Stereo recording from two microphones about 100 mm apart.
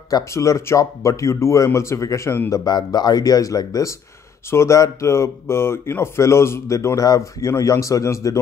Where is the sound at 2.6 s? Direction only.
45° left (ahead or behind).